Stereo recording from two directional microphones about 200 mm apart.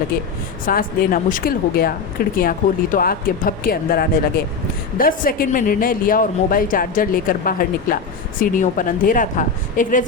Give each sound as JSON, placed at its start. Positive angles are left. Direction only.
{"t": 0.6, "sound": "a woman's voice", "side_deg": 45}